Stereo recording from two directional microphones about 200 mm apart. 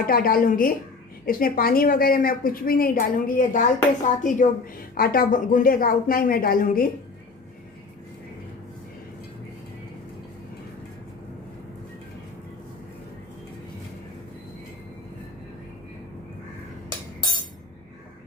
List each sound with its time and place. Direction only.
0.0 s a woman's voice: 45° left (ahead or behind)